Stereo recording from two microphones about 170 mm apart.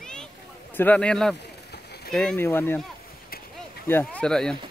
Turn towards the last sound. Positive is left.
turn(degrees=5)  # may be behind; listen again after turning